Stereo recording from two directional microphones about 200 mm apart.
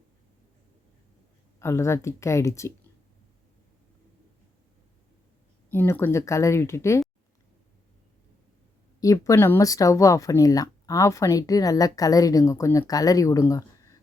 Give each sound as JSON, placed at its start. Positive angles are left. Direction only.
{"t": 1.5, "sound": "speech", "side_deg": 15}
{"t": 5.7, "sound": "speech", "side_deg": 10}
{"t": 9.0, "sound": "speech", "side_deg": 15}